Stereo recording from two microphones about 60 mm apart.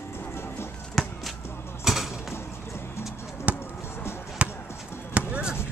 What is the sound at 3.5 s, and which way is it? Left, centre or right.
Music, right.